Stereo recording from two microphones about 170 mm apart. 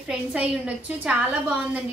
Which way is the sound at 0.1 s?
5° right (ahead or behind).